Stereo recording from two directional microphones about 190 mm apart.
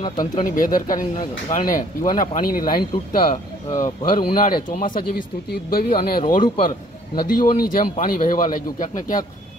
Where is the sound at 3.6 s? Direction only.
20° left (ahead or behind).